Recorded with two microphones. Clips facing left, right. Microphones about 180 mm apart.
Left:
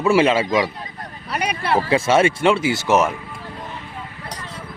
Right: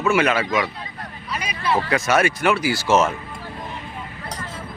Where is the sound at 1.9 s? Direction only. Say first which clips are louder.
Left 5 dB; 25° left (ahead or behind).